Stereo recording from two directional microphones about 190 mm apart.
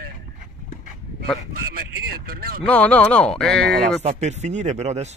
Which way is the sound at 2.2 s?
55° right (ahead or behind).